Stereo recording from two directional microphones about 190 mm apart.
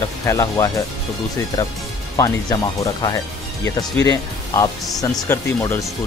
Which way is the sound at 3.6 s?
15° left (ahead or behind).